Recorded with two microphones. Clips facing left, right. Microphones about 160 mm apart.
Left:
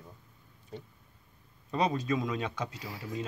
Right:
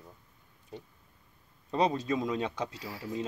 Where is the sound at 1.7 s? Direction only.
30° right (ahead or behind).